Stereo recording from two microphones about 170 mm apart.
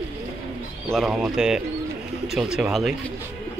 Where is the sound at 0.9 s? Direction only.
Centre (ahead or behind).